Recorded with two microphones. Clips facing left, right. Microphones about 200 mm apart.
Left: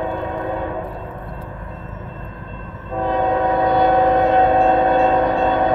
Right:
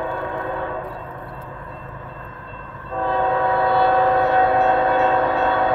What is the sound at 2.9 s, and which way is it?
Train, 15° left (ahead or behind).